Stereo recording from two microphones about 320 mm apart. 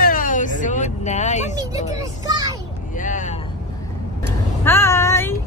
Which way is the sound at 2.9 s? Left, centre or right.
Left.